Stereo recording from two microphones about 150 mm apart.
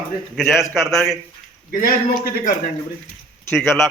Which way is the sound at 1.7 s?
75° left (ahead or behind).